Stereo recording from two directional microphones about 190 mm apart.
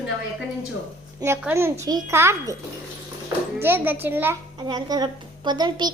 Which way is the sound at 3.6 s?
10° right (ahead or behind).